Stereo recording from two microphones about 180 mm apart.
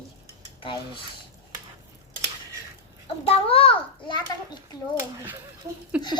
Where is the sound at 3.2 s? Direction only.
30° left (ahead or behind).